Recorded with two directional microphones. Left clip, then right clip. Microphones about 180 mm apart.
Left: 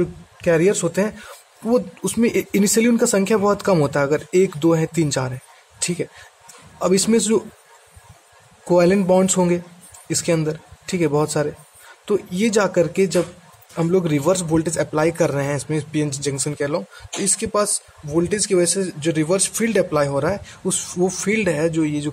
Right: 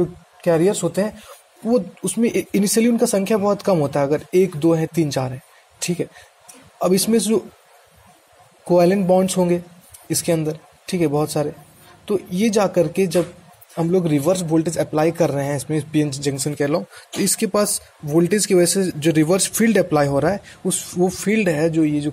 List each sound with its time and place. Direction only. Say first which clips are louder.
0.4 s a man's voice: even; 5° left (ahead or behind)
8.6 s a man's voice: even; centre (ahead or behind)
20.6 s a man's voice: right 1 dB; 5° right (ahead or behind)